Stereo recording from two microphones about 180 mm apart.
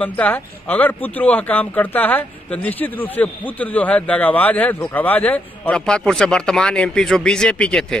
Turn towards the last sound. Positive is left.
turn(degrees=5)  # may be behind; listen again after turning